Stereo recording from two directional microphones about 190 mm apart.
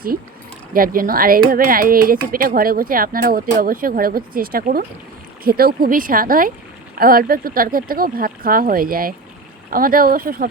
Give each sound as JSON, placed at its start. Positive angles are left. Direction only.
{"t": 0.7, "sound": "speech", "side_deg": -50}